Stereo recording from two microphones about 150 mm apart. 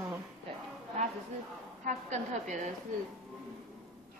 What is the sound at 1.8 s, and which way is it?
Speech, 55° right (ahead or behind).